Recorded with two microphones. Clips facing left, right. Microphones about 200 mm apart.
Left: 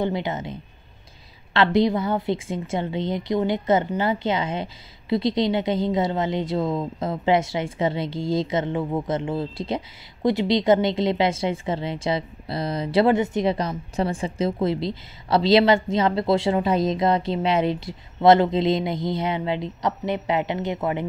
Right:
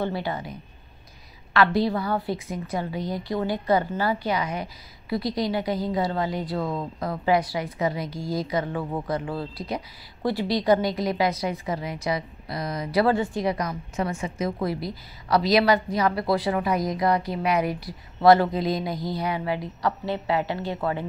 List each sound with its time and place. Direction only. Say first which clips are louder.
0.0 s speech: left 3 dB; 20° left (ahead or behind)